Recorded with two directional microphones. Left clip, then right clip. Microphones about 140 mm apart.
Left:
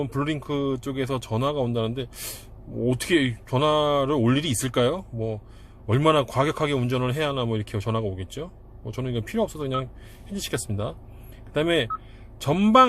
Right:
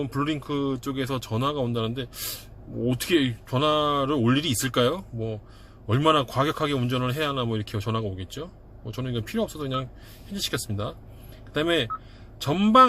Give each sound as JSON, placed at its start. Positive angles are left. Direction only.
{"t": 0.0, "sound": "speech", "side_deg": 15}